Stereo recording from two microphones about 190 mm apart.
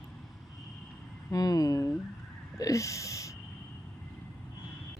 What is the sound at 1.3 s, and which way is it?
Speech, 20° left (ahead or behind).